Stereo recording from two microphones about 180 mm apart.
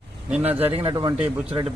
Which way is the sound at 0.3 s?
10° right (ahead or behind).